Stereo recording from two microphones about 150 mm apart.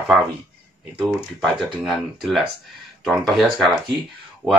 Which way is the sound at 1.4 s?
Centre (ahead or behind).